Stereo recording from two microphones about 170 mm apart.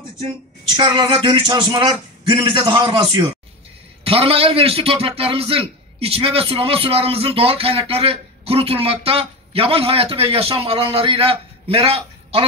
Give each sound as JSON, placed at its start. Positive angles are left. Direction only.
{"t": 0.7, "sound": "a man's voice", "side_deg": -30}